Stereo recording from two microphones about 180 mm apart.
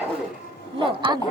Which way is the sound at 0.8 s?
30° right (ahead or behind).